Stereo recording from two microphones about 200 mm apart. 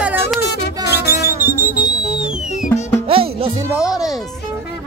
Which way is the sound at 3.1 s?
30° right (ahead or behind).